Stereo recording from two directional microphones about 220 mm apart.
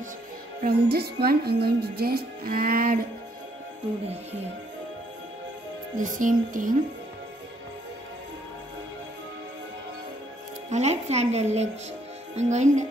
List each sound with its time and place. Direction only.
0.7 s music: 45° right (ahead or behind)
5.9 s speech: 35° right (ahead or behind)
10.7 s speech: 30° right (ahead or behind)